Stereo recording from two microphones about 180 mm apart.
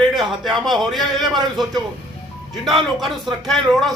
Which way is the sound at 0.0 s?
Centre (ahead or behind).